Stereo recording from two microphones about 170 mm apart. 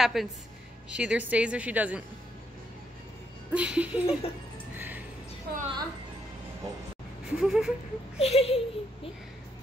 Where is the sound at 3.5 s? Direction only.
5° right (ahead or behind).